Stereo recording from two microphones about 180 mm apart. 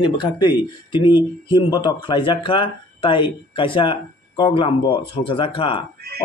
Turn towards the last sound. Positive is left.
turn(degrees=30)  # may be behind; listen again after turning